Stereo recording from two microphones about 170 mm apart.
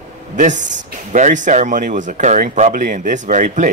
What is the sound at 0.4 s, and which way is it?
Speech, 45° right (ahead or behind).